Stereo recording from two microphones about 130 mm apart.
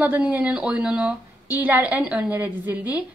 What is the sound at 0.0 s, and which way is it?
A woman's voice, 15° right (ahead or behind).